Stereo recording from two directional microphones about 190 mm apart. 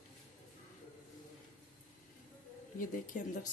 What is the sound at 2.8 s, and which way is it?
Speech, 45° left (ahead or behind).